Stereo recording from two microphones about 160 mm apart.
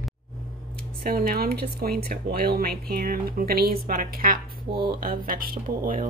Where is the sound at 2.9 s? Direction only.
65° right (ahead or behind).